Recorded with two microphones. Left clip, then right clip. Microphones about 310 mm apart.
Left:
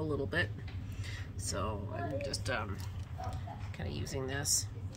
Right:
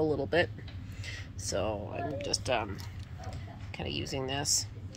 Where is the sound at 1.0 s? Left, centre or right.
Centre.